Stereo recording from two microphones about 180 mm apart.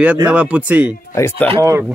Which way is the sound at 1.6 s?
15° right (ahead or behind).